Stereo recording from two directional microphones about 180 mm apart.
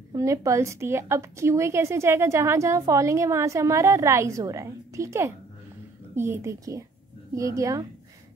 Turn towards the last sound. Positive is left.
turn(degrees=-15)  # may be behind; listen again after turning